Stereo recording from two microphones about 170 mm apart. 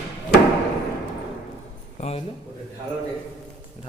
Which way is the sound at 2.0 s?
35° left (ahead or behind).